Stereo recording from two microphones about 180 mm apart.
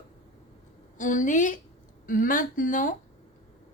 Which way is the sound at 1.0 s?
45° left (ahead or behind).